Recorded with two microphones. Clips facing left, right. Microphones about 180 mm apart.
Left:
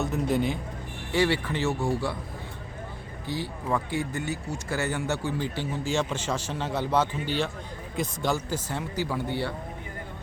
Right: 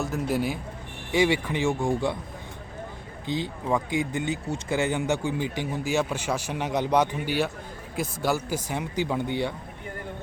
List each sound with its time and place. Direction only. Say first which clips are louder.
0.0 s a man's voice: left 1 dB; centre (ahead or behind)
3.2 s speech: right 3 dB; 20° right (ahead or behind)